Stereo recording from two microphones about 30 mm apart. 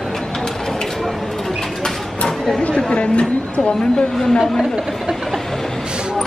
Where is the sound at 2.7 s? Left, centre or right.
Left.